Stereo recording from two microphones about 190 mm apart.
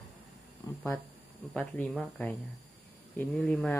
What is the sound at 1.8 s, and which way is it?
Speech, 10° left (ahead or behind).